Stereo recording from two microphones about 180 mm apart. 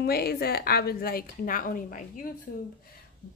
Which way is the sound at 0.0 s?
60° left (ahead or behind).